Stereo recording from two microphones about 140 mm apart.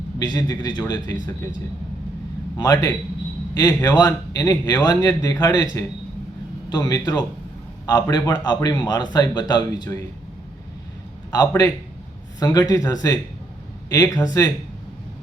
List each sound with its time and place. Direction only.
0.2 s a man's voice: 30° left (ahead or behind)
2.6 s a man's voice: 25° left (ahead or behind)
6.7 s a man's voice: 30° left (ahead or behind)
11.3 s a man's voice: 30° left (ahead or behind)